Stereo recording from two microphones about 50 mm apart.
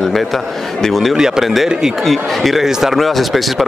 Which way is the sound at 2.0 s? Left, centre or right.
Centre.